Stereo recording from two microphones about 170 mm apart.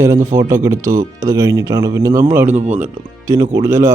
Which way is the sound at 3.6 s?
15° right (ahead or behind).